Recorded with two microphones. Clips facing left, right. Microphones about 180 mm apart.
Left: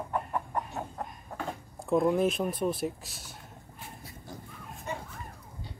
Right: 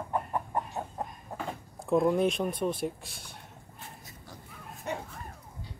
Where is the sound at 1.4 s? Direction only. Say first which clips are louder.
Left 1 dB; centre (ahead or behind).